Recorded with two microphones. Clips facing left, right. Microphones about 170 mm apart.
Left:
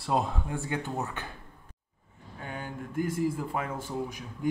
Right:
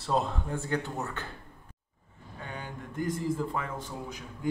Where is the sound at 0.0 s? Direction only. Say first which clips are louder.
Even; 10° left (ahead or behind).